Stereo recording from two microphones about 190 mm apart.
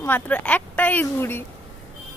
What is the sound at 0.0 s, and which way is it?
A woman's voice, 10° left (ahead or behind).